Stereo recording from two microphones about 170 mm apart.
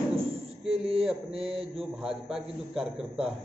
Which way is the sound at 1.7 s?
Centre (ahead or behind).